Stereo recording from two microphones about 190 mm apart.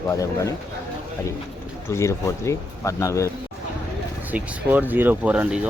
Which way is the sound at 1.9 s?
15° left (ahead or behind).